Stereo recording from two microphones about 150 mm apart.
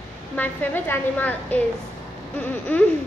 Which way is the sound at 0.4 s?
10° left (ahead or behind).